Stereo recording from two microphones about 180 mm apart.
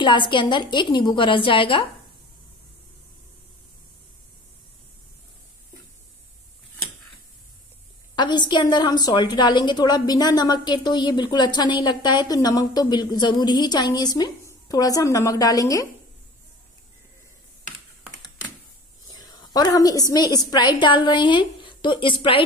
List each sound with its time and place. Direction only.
0.0 s a woman's voice: 25° left (ahead or behind)
8.2 s a woman's voice: 25° left (ahead or behind)
19.1 s a woman's voice: 25° left (ahead or behind)